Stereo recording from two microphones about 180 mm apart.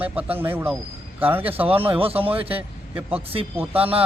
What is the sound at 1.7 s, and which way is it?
Speech, 30° right (ahead or behind).